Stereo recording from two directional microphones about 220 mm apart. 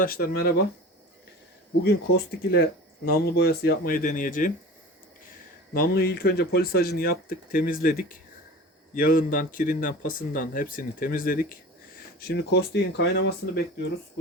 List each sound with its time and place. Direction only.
0.0 s speech: 40° left (ahead or behind)
1.8 s speech: 45° left (ahead or behind)
5.7 s speech: 40° left (ahead or behind)